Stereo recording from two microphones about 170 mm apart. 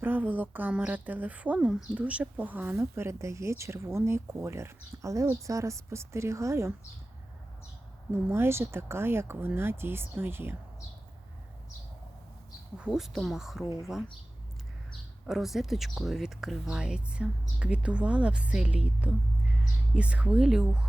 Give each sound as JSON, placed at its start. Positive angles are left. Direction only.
{"t": 0.0, "sound": "speech", "side_deg": -10}
{"t": 8.1, "sound": "speech", "side_deg": -15}
{"t": 12.7, "sound": "speech", "side_deg": -5}
{"t": 15.3, "sound": "speech", "side_deg": 0}